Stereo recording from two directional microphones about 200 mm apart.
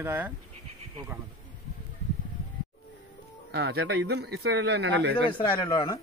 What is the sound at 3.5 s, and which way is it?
A man's voice, 55° right (ahead or behind).